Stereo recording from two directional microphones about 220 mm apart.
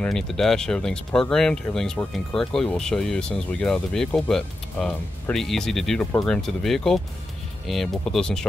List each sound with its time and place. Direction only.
0.0 s speech: centre (ahead or behind)